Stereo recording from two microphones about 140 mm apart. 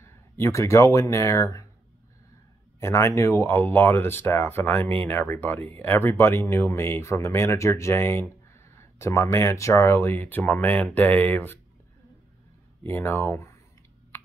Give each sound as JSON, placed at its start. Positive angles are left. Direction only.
{"t": 0.0, "sound": "speech", "side_deg": 20}
{"t": 2.8, "sound": "speech", "side_deg": 20}
{"t": 12.8, "sound": "speech", "side_deg": 15}